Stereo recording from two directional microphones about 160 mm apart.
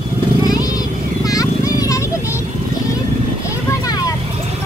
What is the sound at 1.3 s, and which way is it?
Vehicle, 20° left (ahead or behind).